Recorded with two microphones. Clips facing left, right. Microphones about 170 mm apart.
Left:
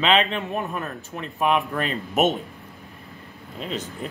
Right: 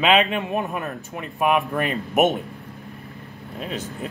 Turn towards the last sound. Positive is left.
turn(degrees=-5)  # may be behind; listen again after turning